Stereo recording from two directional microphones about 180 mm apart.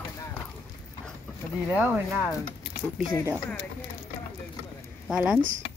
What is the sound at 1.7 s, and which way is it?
Speech, 10° right (ahead or behind).